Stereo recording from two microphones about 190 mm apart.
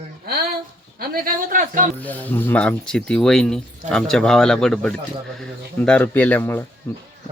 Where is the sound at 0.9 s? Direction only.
50° right (ahead or behind).